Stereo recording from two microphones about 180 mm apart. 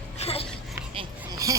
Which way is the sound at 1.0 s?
20° right (ahead or behind).